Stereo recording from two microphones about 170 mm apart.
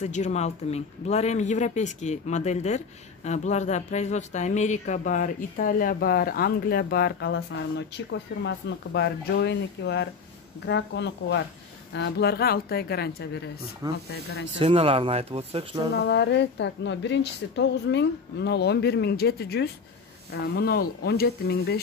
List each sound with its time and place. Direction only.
0.0 s a woman's voice: 45° left (ahead or behind); by 14.5 s 70° left (ahead or behind)
14.6 s speech: 35° right (ahead or behind)
15.9 s a woman's voice: 85° left; by 21.8 s 65° left (ahead or behind)